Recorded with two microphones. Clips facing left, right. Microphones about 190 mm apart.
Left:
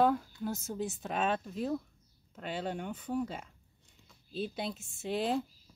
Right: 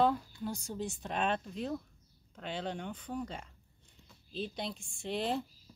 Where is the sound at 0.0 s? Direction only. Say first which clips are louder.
Left 2 dB; 5° left (ahead or behind).